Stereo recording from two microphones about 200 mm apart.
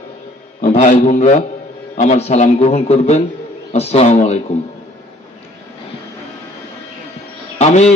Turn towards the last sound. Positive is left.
turn(degrees=30)  # may be behind; listen again after turning